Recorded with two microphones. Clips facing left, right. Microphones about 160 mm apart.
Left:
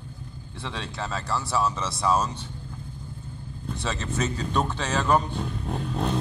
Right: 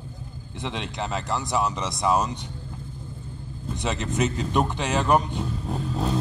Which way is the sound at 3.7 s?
15° right (ahead or behind).